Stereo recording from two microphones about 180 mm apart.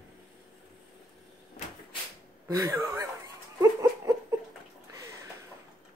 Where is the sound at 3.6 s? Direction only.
15° right (ahead or behind).